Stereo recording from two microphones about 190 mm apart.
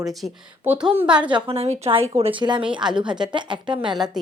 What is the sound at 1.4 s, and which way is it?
Speech, 30° right (ahead or behind).